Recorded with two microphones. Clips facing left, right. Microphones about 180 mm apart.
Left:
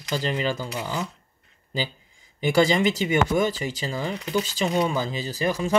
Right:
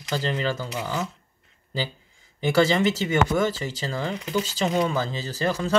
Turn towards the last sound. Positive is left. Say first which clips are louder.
# even
turn(degrees=15)  # may be behind; listen again after turning